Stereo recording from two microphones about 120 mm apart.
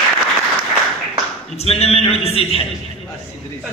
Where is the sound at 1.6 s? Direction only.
60° left (ahead or behind).